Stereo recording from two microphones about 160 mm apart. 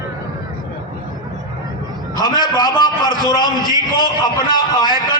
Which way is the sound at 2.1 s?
25° left (ahead or behind).